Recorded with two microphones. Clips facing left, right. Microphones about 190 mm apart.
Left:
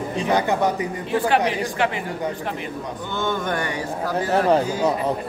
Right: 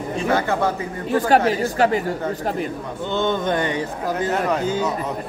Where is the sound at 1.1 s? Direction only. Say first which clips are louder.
Right 3 dB; 40° right (ahead or behind).